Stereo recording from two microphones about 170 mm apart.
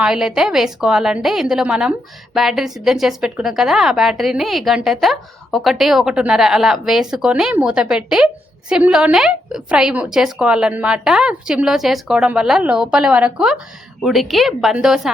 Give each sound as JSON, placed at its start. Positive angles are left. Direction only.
{"t": 0.0, "sound": "a woman's voice", "side_deg": -5}